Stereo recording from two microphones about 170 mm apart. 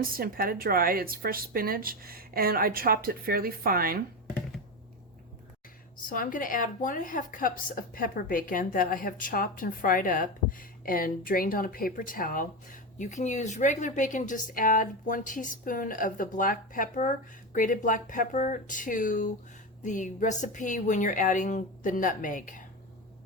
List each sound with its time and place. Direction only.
0.0 s a woman's voice: 60° right (ahead or behind)
6.1 s a woman's voice: 55° left (ahead or behind)